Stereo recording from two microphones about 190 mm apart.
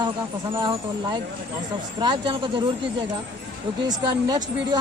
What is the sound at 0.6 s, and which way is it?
Speech, 25° right (ahead or behind).